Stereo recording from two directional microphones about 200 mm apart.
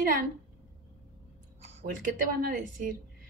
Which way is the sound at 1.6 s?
35° right (ahead or behind).